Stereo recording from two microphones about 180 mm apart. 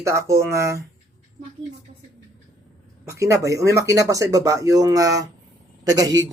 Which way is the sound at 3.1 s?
20° right (ahead or behind).